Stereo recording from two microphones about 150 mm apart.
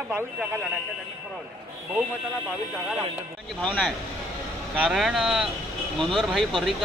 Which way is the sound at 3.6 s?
5° left (ahead or behind).